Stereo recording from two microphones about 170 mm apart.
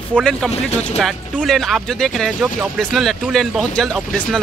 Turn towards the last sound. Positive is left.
turn(degrees=0)  # may be behind; listen again after turning